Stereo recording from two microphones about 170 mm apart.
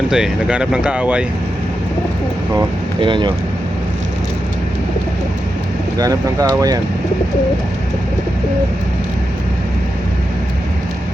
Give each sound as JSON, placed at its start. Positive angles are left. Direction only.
{"t": 0.1, "sound": "speech", "side_deg": -5}
{"t": 2.6, "sound": "speech", "side_deg": -30}
{"t": 6.0, "sound": "speech", "side_deg": -20}